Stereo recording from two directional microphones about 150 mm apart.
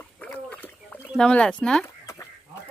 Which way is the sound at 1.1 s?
5° left (ahead or behind).